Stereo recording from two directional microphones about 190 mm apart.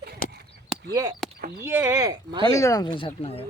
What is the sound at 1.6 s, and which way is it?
Speech, 10° right (ahead or behind).